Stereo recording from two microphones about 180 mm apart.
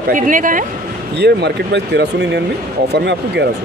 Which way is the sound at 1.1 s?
70° right (ahead or behind).